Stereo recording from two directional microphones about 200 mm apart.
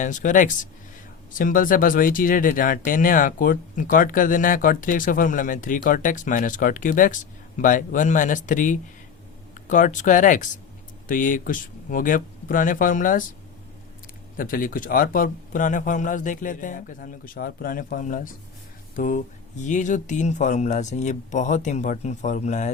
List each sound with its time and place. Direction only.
0.0 s speech: 40° left (ahead or behind)
14.3 s speech: 45° left (ahead or behind)